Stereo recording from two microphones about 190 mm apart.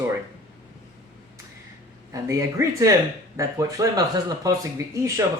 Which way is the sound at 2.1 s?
15° right (ahead or behind).